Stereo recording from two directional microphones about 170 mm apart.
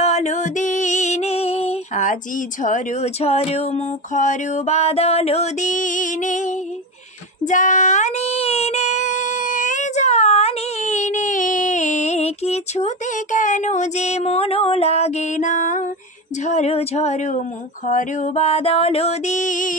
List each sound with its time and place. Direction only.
0.0 s music: 40° left (ahead or behind)
7.4 s child singing: 50° left (ahead or behind)
16.4 s music: 40° left (ahead or behind)